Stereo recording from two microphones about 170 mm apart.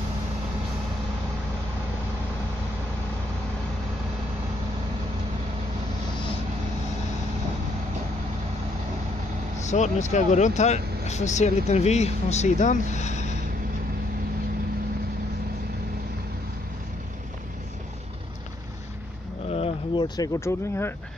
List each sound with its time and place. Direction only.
9.7 s speech: 45° left (ahead or behind)
19.5 s a sound: 35° left (ahead or behind)
20.2 s speech: 15° left (ahead or behind)